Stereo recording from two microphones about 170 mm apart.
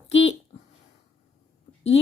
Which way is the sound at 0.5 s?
40° left (ahead or behind).